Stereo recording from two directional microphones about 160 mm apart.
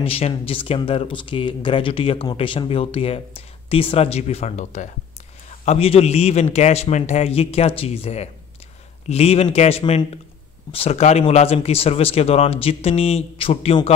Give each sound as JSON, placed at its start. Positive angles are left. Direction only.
{"t": 0.0, "sound": "speech", "side_deg": 35}